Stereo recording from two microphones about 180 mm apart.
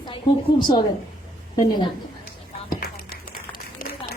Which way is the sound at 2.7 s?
60° left (ahead or behind).